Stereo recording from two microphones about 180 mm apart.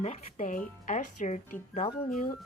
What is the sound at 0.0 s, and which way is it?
Speech, 40° left (ahead or behind).